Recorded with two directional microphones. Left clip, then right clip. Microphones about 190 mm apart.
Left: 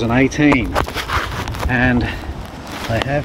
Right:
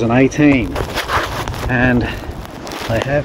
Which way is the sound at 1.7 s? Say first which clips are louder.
Right 1 dB; 20° left (ahead or behind).